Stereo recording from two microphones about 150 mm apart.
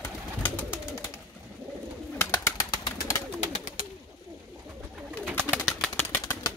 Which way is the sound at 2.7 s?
20° left (ahead or behind).